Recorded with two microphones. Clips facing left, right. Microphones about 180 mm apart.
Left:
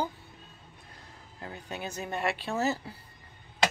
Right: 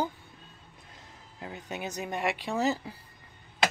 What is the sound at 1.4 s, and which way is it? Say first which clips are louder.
Speech: right 1 dB; 20° right (ahead or behind).